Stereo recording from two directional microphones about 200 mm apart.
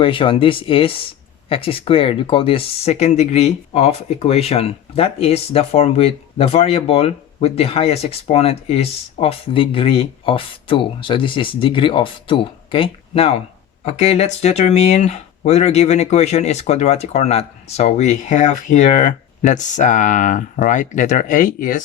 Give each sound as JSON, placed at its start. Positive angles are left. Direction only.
{"t": 0.0, "sound": "speech", "side_deg": 25}